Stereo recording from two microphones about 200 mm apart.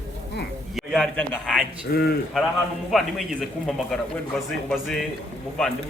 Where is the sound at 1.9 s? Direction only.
50° left (ahead or behind).